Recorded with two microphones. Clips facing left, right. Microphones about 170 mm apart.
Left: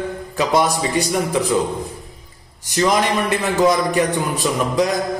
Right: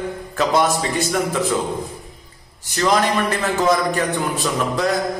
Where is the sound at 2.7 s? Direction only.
20° left (ahead or behind).